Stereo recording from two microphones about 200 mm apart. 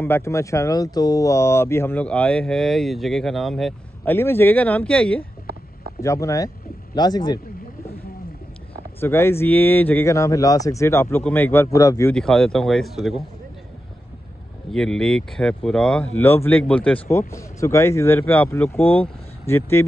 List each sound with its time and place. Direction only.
0.0 s a man's voice: 15° left (ahead or behind)
9.0 s speech: 10° left (ahead or behind)
12.2 s speech: 5° left (ahead or behind)
14.7 s speech: 5° left (ahead or behind)